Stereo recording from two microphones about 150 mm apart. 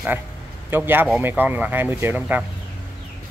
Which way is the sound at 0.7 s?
15° right (ahead or behind).